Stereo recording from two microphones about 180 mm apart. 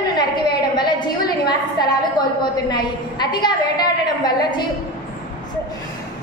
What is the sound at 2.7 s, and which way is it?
Speech, 25° left (ahead or behind).